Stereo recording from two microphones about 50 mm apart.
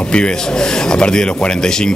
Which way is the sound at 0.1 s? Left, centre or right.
Centre.